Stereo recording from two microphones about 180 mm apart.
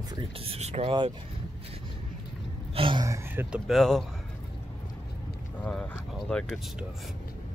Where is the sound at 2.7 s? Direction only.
30° right (ahead or behind); by 4.0 s centre (ahead or behind).